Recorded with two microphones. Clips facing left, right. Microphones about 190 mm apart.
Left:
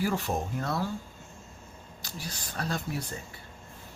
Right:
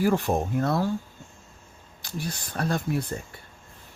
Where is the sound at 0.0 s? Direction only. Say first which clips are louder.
Right 6 dB; 55° right (ahead or behind).